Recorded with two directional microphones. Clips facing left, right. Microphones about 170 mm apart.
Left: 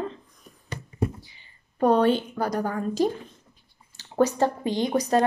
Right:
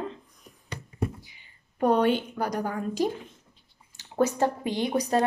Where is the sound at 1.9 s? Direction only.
15° right (ahead or behind).